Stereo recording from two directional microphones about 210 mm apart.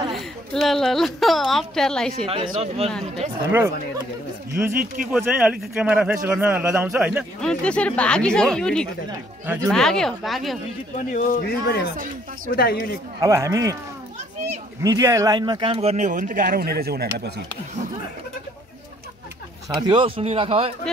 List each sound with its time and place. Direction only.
0.1 s a woman's voice: centre (ahead or behind)
2.2 s speech: 25° right (ahead or behind)
3.4 s speech: 10° right (ahead or behind)
5.1 s a man's voice: 5° right (ahead or behind)
11.0 s speech: 40° left (ahead or behind)
13.2 s speech: 15° right (ahead or behind)
14.8 s speech: 15° right (ahead or behind); by 17.3 s 50° right (ahead or behind)
19.7 s speech: 25° right (ahead or behind)